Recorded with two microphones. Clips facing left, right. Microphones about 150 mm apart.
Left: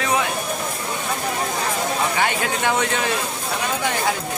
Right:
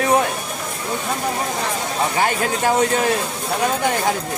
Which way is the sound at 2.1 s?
40° right (ahead or behind).